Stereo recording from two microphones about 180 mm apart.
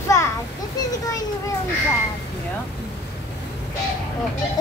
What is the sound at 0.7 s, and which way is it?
Children playing, 20° left (ahead or behind).